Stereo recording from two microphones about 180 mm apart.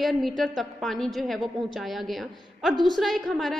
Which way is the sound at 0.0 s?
Centre (ahead or behind).